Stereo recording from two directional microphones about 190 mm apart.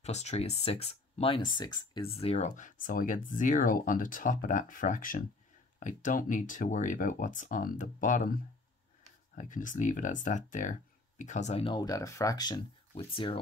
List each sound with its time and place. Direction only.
0.0 s speech: 35° left (ahead or behind)